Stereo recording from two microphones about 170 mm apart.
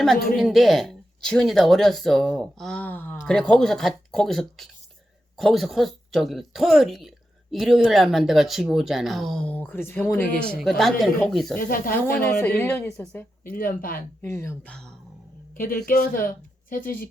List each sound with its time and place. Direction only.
0.3 s speech: centre (ahead or behind)
10.6 s speech: centre (ahead or behind)
11.7 s a woman's voice: 55° left (ahead or behind)
12.2 s speech: 15° left (ahead or behind)
13.4 s a woman's voice: 55° left (ahead or behind)
14.2 s speech: 15° left (ahead or behind)
15.5 s a woman's voice: 55° left (ahead or behind)